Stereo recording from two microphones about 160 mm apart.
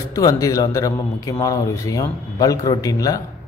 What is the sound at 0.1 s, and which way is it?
Speech, 20° left (ahead or behind).